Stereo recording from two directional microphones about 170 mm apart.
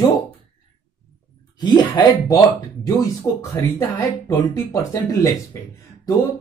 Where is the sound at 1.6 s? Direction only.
25° left (ahead or behind).